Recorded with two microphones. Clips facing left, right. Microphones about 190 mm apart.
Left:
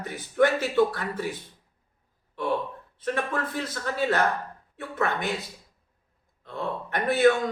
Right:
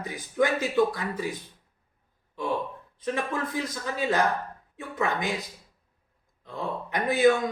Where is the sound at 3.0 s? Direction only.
15° right (ahead or behind).